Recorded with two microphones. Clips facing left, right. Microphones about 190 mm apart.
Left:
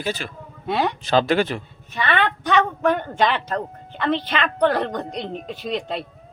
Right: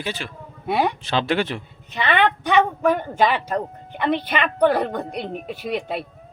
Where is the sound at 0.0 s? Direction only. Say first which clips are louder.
Left 2 dB; 40° left (ahead or behind).